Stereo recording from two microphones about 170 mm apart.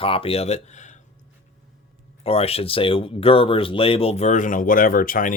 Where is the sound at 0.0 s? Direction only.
35° left (ahead or behind).